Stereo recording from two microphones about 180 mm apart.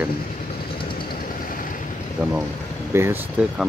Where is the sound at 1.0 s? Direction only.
50° left (ahead or behind).